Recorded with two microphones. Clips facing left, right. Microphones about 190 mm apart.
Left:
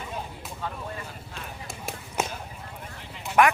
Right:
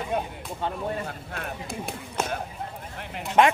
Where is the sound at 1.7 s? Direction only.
5° left (ahead or behind).